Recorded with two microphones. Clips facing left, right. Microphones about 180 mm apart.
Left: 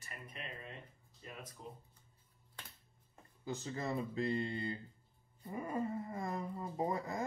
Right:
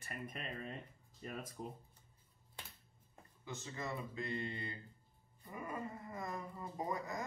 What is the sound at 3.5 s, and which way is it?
Speech, 35° left (ahead or behind).